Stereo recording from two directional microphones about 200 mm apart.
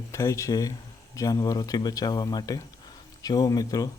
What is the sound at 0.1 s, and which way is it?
Speech, 15° left (ahead or behind).